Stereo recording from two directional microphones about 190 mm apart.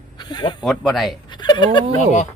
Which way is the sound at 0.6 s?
Centre (ahead or behind).